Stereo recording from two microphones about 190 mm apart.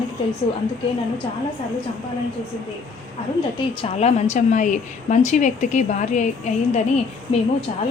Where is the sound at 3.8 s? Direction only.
35° left (ahead or behind).